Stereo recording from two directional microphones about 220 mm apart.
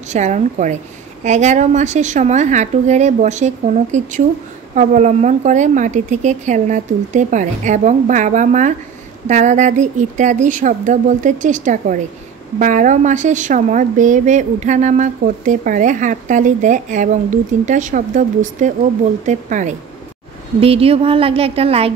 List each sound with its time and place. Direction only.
0.1 s a woman's voice: 30° right (ahead or behind)